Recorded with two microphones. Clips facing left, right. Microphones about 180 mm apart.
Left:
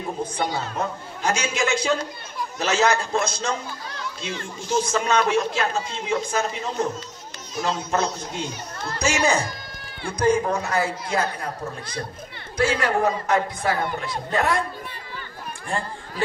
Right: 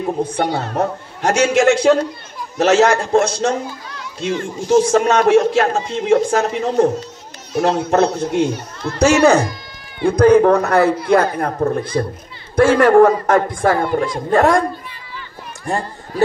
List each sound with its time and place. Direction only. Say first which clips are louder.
0.0 s a man's voice: right 8 dB; 65° right (ahead or behind)
4.6 s a man's voice: right 10 dB; 70° right (ahead or behind); by 14.6 s 45° right (ahead or behind)